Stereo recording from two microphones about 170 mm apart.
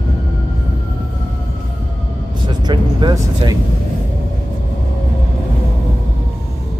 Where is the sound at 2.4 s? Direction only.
25° right (ahead or behind).